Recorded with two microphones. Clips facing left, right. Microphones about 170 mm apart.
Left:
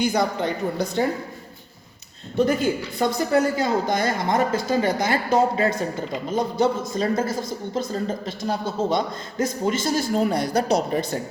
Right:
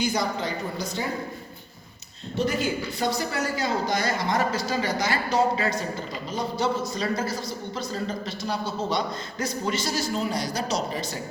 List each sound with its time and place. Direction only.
0.0 s a woman's voice: 55° left (ahead or behind)
2.3 s a woman's voice: 50° left (ahead or behind)